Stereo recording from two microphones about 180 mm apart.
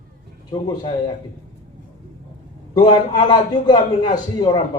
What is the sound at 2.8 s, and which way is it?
A man's voice, 25° left (ahead or behind).